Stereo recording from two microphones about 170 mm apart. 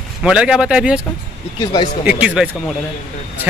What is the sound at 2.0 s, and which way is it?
Speech, 5° right (ahead or behind).